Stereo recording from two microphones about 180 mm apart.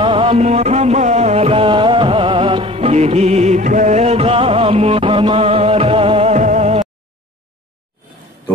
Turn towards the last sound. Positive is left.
turn(degrees=-40)  # may be behind; listen again after turning